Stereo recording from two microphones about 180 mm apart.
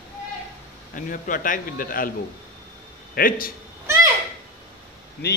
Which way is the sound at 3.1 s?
55° left (ahead or behind).